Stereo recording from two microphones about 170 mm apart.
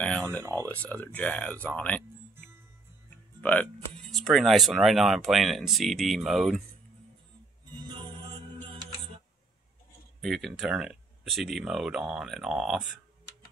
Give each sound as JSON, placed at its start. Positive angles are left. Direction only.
{"t": 0.4, "sound": "speech", "side_deg": -20}
{"t": 0.7, "sound": "speech", "side_deg": 10}
{"t": 3.3, "sound": "speech", "side_deg": 10}
{"t": 7.7, "sound": "music", "side_deg": -25}
{"t": 10.2, "sound": "speech", "side_deg": 0}